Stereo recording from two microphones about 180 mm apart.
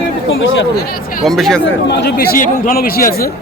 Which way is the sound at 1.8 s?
65° left (ahead or behind).